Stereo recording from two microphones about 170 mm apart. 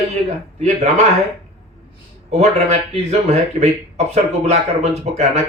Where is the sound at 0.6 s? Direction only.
40° right (ahead or behind).